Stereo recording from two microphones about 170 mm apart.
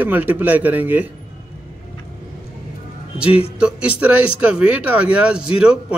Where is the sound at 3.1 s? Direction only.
5° right (ahead or behind).